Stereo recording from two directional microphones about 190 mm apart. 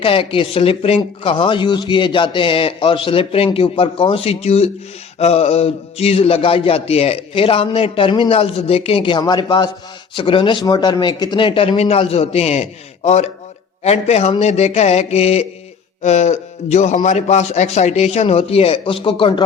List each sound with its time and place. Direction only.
0.0 s a man's voice: 30° left (ahead or behind)